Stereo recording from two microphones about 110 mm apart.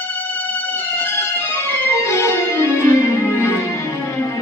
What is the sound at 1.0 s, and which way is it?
Music, 20° left (ahead or behind).